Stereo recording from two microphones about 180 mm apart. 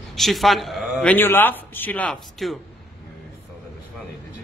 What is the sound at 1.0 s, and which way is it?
Speech, 10° left (ahead or behind).